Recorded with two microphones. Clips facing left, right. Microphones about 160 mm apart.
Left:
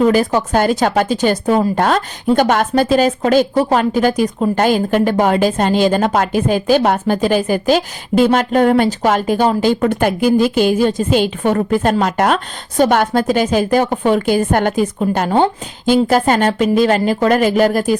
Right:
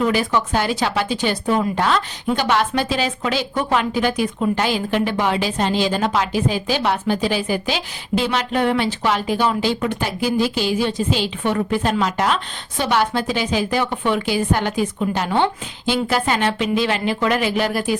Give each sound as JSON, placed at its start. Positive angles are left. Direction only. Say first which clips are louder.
{"t": 0.0, "sound": "a woman's voice", "louder": "left 6 dB", "side_deg": 40}